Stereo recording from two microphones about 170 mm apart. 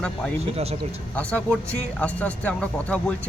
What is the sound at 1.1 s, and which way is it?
Speech, 10° left (ahead or behind).